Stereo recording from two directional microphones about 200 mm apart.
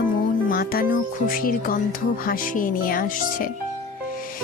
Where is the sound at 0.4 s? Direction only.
45° left (ahead or behind).